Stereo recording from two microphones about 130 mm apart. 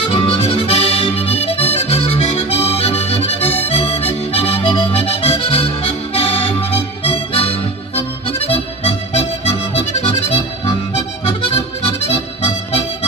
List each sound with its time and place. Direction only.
0.1 s music: 40° left (ahead or behind)